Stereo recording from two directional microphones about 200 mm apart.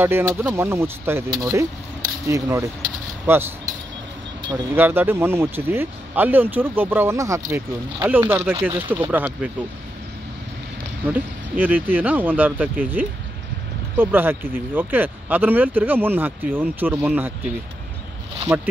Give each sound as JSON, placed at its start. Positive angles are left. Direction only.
{"t": 0.0, "sound": "speech", "side_deg": -10}
{"t": 4.7, "sound": "speech", "side_deg": -10}
{"t": 11.5, "sound": "speech", "side_deg": -10}
{"t": 18.5, "sound": "speech", "side_deg": -10}